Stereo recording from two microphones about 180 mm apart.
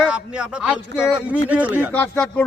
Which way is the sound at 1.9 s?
10° left (ahead or behind).